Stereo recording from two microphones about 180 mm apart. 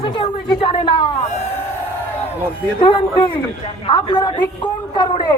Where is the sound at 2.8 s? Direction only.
25° left (ahead or behind).